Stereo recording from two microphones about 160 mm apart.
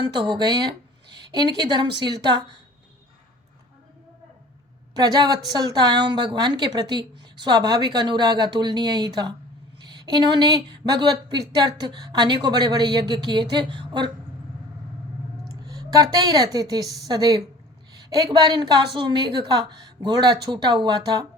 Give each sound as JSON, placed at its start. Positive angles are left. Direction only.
{"t": 0.1, "sound": "a woman's voice", "side_deg": -30}
{"t": 4.9, "sound": "a woman's voice", "side_deg": -25}
{"t": 15.4, "sound": "a woman's voice", "side_deg": -25}